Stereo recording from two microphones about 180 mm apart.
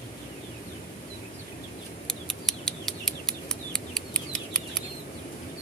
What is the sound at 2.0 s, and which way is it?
Bird, centre (ahead or behind).